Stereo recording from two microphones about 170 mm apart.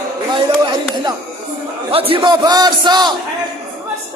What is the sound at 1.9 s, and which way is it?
Speech, 35° right (ahead or behind).